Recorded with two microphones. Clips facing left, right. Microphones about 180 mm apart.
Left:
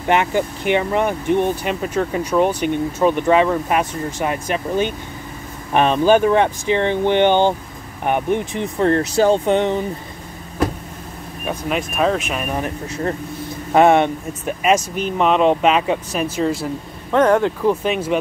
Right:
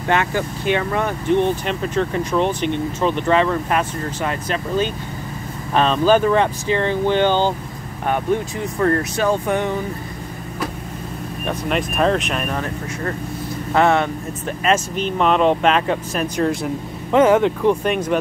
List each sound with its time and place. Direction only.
0.1 s speech: 20° left (ahead or behind)
11.4 s speech: 5° left (ahead or behind)
17.1 s speech: 5° right (ahead or behind)